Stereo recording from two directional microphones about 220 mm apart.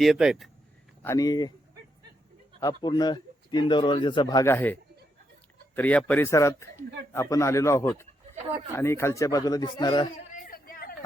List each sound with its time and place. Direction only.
0.0 s speech: centre (ahead or behind)
1.0 s speech: 15° left (ahead or behind)
2.6 s speech: 20° left (ahead or behind)
10.3 s a sound: 40° left (ahead or behind)